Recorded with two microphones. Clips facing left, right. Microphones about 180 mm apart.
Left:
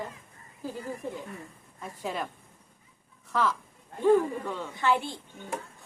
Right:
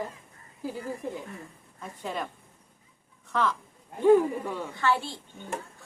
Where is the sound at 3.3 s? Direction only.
5° left (ahead or behind).